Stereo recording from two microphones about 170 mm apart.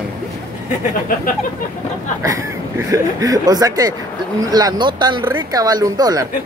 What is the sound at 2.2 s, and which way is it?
Speech, 20° right (ahead or behind).